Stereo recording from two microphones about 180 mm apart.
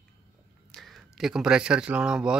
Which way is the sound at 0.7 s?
Centre (ahead or behind).